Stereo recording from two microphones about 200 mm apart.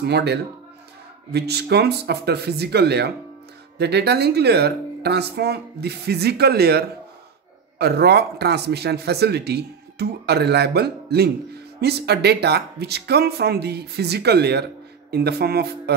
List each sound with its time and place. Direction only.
0.0 s speech: 55° right (ahead or behind)